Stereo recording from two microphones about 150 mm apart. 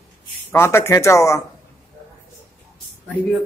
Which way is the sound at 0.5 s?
15° left (ahead or behind).